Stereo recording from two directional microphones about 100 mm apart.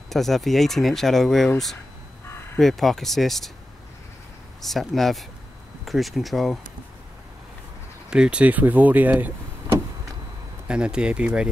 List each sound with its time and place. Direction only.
0.1 s speech: centre (ahead or behind)
2.6 s speech: centre (ahead or behind)
4.6 s speech: centre (ahead or behind)
8.1 s speech: 10° right (ahead or behind)
10.7 s speech: 10° right (ahead or behind)